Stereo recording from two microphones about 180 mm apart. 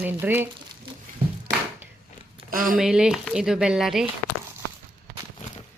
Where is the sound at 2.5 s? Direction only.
50° right (ahead or behind).